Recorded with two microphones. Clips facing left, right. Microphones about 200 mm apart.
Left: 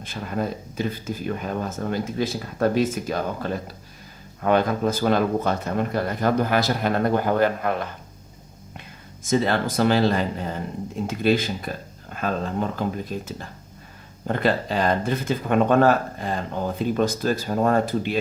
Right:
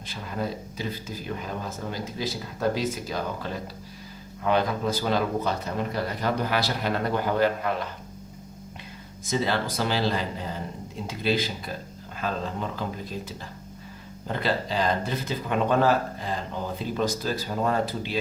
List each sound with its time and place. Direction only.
0.0 s speech: 50° left (ahead or behind)
9.3 s speech: 50° left (ahead or behind)